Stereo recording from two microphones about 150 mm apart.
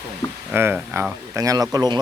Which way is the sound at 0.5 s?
15° right (ahead or behind).